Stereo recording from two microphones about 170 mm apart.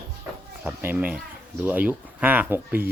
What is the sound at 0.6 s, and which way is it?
Speech, 10° right (ahead or behind).